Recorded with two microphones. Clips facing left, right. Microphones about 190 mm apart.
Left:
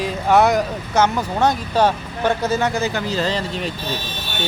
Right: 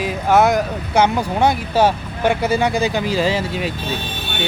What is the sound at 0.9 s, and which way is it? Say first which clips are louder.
Speech: right 2 dB; 15° right (ahead or behind).